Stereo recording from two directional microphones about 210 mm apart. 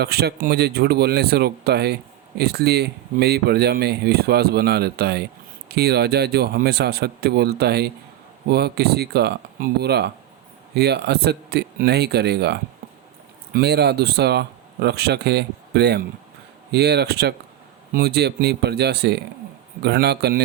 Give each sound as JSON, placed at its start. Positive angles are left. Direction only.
{"t": 0.0, "sound": "speech", "side_deg": -50}